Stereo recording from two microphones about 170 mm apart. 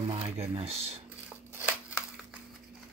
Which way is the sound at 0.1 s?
35° right (ahead or behind).